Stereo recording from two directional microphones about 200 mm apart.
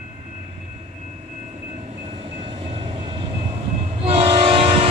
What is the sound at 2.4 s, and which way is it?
Train, 30° right (ahead or behind).